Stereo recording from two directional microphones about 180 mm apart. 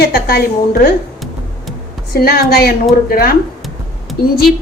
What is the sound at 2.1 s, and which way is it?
A woman's voice, 60° left (ahead or behind).